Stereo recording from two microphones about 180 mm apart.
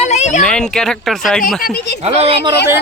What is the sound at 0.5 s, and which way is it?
Speech, 5° left (ahead or behind).